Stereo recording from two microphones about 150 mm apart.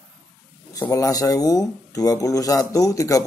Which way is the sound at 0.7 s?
20° left (ahead or behind).